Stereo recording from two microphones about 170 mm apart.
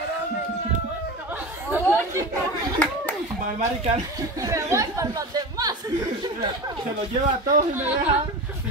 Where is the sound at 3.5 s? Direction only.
40° right (ahead or behind).